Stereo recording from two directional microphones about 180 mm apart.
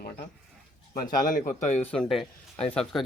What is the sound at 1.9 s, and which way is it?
Speech, centre (ahead or behind).